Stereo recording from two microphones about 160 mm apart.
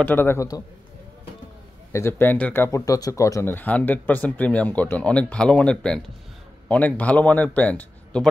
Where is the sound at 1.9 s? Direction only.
15° left (ahead or behind).